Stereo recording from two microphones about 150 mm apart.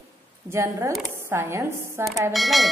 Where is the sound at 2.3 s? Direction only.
Centre (ahead or behind).